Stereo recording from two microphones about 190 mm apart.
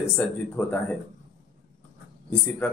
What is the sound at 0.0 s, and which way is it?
Speech, 5° left (ahead or behind).